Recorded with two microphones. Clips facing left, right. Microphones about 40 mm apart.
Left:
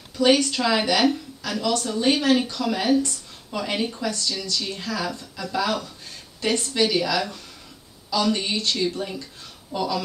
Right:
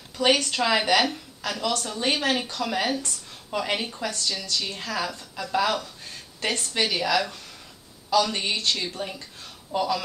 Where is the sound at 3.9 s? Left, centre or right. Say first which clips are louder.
Left 2 dB; right.